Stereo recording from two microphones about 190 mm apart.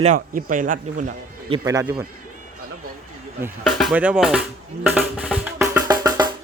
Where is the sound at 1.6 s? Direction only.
20° right (ahead or behind).